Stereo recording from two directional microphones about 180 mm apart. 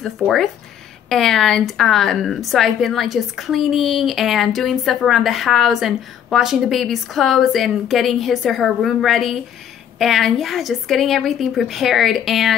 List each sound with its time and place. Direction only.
0.0 s a woman's voice: centre (ahead or behind)